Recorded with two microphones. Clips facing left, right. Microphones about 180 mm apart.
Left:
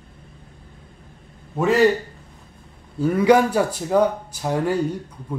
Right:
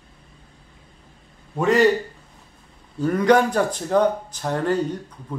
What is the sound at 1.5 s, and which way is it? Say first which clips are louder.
Speech: even; 5° left (ahead or behind).